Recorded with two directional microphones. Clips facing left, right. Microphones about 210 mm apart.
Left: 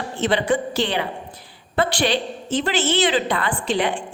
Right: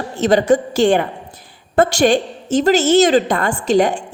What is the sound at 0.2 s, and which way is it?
A woman's voice, 45° right (ahead or behind).